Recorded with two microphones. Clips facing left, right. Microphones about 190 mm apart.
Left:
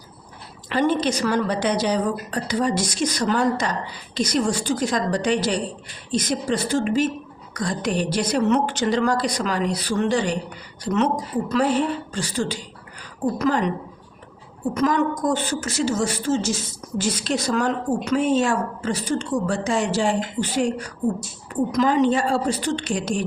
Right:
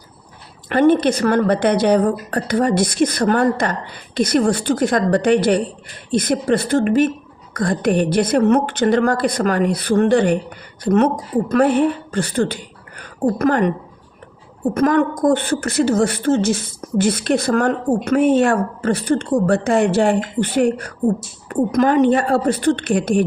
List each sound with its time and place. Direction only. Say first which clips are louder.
0.7 s a woman's voice: right 7 dB; 55° right (ahead or behind)